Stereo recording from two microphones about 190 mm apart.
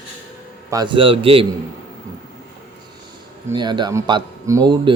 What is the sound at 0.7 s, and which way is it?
Mantra, 20° right (ahead or behind).